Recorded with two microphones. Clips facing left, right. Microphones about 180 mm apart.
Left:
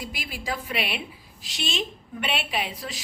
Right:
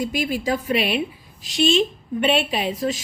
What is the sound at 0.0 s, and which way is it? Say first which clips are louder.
A woman's voice: right 12 dB; 25° right (ahead or behind).